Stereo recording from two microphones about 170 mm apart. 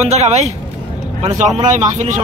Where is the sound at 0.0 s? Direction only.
40° right (ahead or behind).